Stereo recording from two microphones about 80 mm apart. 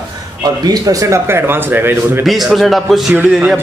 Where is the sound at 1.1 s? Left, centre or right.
Right.